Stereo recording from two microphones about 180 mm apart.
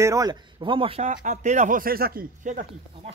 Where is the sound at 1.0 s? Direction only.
45° right (ahead or behind).